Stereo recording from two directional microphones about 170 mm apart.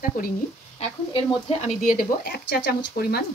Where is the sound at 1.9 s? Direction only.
60° left (ahead or behind).